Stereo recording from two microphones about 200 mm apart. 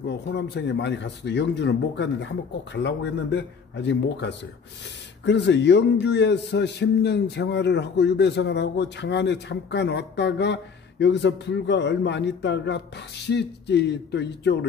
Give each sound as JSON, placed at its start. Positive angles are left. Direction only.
{"t": 0.0, "sound": "a man's voice", "side_deg": 55}